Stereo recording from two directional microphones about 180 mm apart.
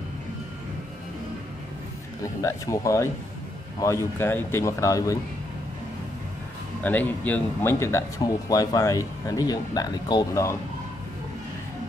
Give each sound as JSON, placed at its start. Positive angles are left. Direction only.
{"t": 2.2, "sound": "speech", "side_deg": 15}
{"t": 6.8, "sound": "speech", "side_deg": 10}